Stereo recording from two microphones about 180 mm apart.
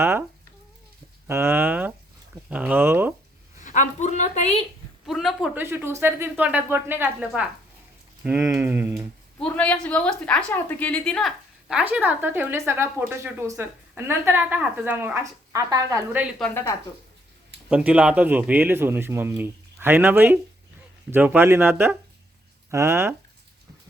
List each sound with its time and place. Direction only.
0.0 s speech: 15° right (ahead or behind)
1.3 s speech: 15° right (ahead or behind)
3.6 s a woman's voice: 45° left (ahead or behind)
5.0 s a man's voice: centre (ahead or behind)
5.6 s speech: 15° right (ahead or behind)
9.4 s speech: 10° left (ahead or behind); by 16.3 s 15° right (ahead or behind)
17.7 s speech: 5° right (ahead or behind)